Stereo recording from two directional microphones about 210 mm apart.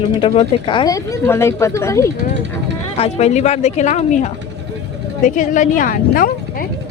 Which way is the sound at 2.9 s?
30° left (ahead or behind).